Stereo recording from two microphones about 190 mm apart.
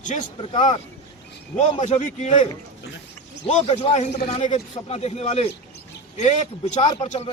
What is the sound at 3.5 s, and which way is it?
A man's voice, 35° left (ahead or behind).